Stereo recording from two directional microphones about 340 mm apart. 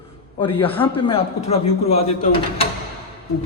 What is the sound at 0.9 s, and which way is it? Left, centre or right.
Speech, centre.